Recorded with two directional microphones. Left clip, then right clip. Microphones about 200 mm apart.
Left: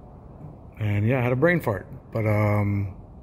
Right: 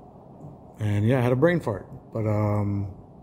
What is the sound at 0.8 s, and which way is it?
Speech, 15° right (ahead or behind).